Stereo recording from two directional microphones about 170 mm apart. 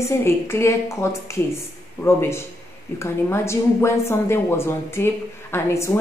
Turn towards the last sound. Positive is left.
turn(degrees=15)  # may be behind; listen again after turning